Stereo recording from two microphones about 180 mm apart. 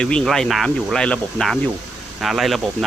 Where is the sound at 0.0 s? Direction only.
5° left (ahead or behind).